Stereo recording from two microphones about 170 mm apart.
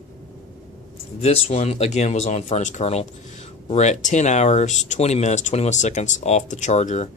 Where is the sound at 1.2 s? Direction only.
40° left (ahead or behind).